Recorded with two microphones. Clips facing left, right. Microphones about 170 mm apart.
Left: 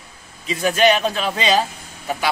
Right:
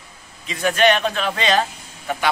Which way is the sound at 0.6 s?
5° left (ahead or behind).